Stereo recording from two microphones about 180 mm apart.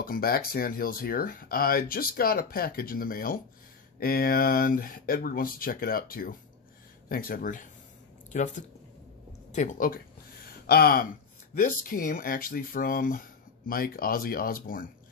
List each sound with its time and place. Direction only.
0.0 s speech: 55° left (ahead or behind)
10.7 s speech: 60° left (ahead or behind)